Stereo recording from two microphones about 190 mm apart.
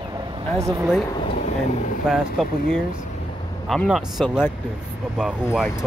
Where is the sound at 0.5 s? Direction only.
15° right (ahead or behind).